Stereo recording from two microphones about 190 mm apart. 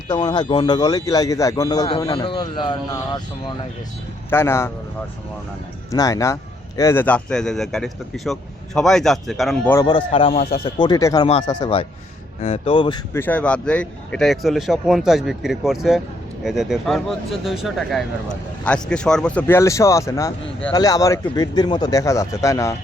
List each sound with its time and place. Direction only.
0.1 s speech: 20° left (ahead or behind)
4.3 s speech: 10° left (ahead or behind)
5.9 s speech: 15° left (ahead or behind); by 9.7 s centre (ahead or behind)
9.7 s speech: 25° left (ahead or behind)
13.1 s speech: 10° left (ahead or behind)